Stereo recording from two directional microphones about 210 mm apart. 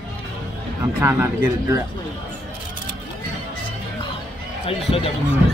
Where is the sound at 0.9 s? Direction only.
10° right (ahead or behind).